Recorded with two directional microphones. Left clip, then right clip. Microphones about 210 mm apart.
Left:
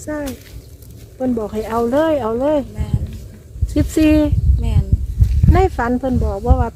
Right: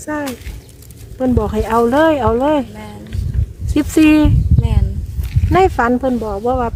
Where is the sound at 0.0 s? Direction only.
5° right (ahead or behind).